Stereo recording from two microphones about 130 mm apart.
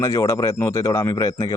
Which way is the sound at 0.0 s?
20° left (ahead or behind).